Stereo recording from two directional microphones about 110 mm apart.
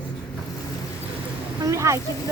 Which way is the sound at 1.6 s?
25° right (ahead or behind).